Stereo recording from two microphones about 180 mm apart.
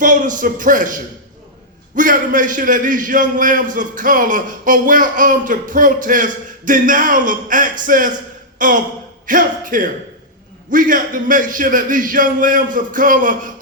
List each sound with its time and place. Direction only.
0.0 s a man's voice: 45° right (ahead or behind)
2.0 s a man's voice: 45° right (ahead or behind)
8.5 s a sound: 45° right (ahead or behind)
9.2 s a man's voice: 50° right (ahead or behind)